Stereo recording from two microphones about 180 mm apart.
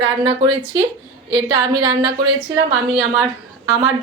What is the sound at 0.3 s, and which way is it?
Speech, 30° right (ahead or behind).